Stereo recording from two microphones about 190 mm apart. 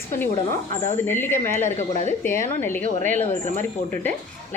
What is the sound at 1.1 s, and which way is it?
A woman's voice, 10° left (ahead or behind).